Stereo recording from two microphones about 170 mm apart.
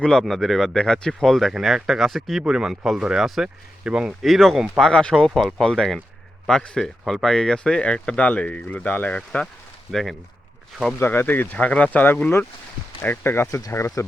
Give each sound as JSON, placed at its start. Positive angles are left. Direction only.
{"t": 0.0, "sound": "speech", "side_deg": 5}
{"t": 11.0, "sound": "speech", "side_deg": 10}